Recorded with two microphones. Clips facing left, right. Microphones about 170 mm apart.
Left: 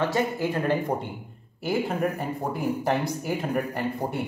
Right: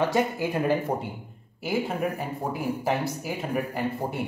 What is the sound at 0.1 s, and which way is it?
A man's voice, 10° right (ahead or behind).